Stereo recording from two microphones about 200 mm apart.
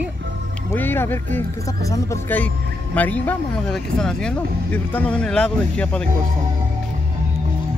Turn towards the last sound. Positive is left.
turn(degrees=5)  # may be behind; listen again after turning